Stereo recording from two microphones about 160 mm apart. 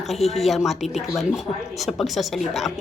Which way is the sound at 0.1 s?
Centre (ahead or behind).